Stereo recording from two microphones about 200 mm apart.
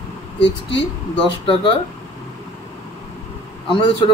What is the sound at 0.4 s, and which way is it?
Speech, 60° left (ahead or behind).